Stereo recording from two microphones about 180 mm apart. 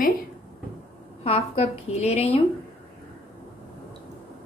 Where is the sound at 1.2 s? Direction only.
35° left (ahead or behind).